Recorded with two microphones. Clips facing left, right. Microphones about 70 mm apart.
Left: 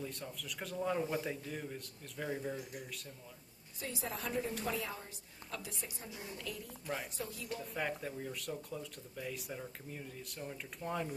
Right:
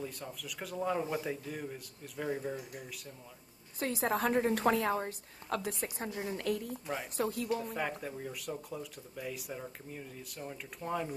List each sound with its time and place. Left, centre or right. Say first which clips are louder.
0.0 s a man's voice: right 2 dB; centre
3.8 s a woman's voice: right 10 dB; right
7.6 s speech: right 2 dB; centre